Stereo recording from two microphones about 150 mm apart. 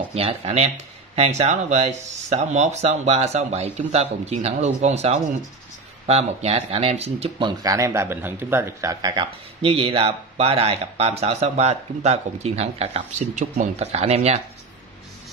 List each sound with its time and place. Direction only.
0.1 s speech: 40° right (ahead or behind)
9.7 s speech: 40° right (ahead or behind)